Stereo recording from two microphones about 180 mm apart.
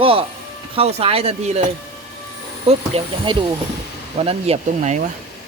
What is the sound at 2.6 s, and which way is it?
Speech, 35° right (ahead or behind).